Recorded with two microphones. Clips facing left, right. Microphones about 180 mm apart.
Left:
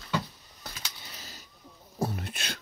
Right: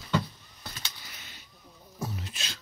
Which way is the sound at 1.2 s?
40° left (ahead or behind).